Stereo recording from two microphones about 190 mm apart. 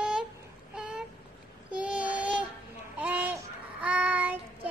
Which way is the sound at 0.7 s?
5° right (ahead or behind).